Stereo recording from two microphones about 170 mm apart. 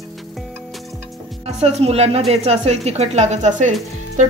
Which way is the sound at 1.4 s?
40° right (ahead or behind).